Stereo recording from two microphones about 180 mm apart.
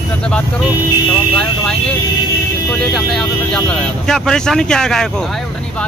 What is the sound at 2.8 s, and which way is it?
Speech, centre (ahead or behind).